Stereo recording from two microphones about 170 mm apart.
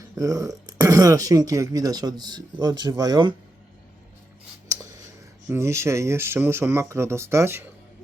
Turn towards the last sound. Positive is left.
turn(degrees=-15)  # may be behind; listen again after turning